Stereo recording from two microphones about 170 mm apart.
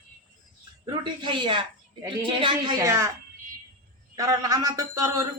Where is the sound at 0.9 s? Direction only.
25° right (ahead or behind).